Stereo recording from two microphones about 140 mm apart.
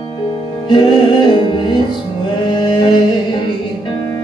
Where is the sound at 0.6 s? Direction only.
35° left (ahead or behind).